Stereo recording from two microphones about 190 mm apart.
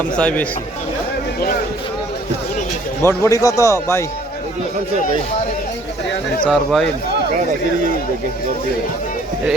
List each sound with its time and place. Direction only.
0.2 s speech: 5° left (ahead or behind)
3.0 s speech: 15° left (ahead or behind)
6.5 s speech: centre (ahead or behind)